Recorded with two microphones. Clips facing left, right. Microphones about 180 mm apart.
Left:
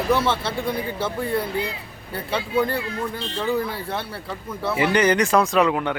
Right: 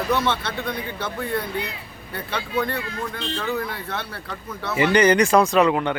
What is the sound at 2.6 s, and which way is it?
Speech, 30° left (ahead or behind).